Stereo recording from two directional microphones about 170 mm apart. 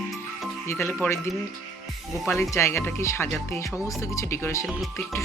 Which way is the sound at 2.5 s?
15° left (ahead or behind).